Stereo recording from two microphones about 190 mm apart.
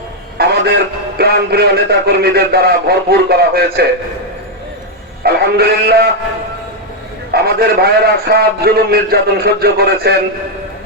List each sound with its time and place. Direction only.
0.3 s a man's voice: 60° right (ahead or behind)
5.2 s a sound: 55° right (ahead or behind)
7.3 s a man's voice: 55° right (ahead or behind)